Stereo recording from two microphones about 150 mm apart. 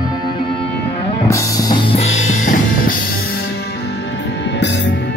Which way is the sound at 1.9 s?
50° left (ahead or behind).